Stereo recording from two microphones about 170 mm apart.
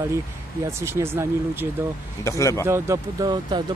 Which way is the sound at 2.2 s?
15° left (ahead or behind).